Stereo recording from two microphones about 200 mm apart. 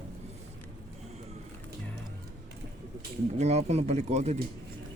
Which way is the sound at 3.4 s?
30° right (ahead or behind).